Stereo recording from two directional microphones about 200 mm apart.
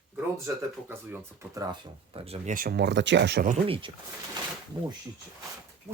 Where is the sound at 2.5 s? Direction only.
50° right (ahead or behind).